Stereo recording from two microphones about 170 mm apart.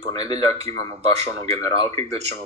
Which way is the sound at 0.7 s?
40° right (ahead or behind).